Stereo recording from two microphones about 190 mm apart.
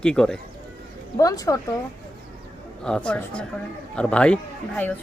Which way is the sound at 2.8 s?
5° left (ahead or behind).